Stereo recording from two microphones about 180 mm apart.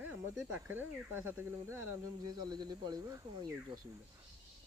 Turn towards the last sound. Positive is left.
turn(degrees=-20)  # may be behind; listen again after turning